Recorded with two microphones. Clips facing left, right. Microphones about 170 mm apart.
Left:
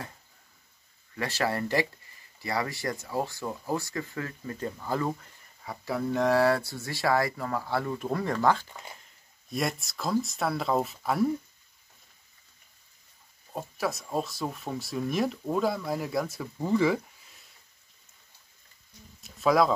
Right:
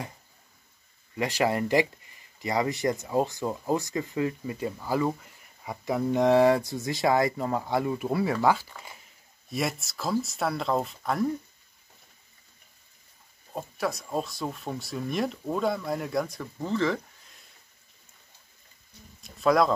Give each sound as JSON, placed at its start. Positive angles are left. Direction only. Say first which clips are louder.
{"t": 1.1, "sound": "speech", "louder": "right 4 dB", "side_deg": -15}
{"t": 5.9, "sound": "speech", "louder": "right 3 dB", "side_deg": -20}
{"t": 13.5, "sound": "speech", "louder": "right 1 dB", "side_deg": 0}
{"t": 19.2, "sound": "a sound", "louder": "right 1 dB", "side_deg": 0}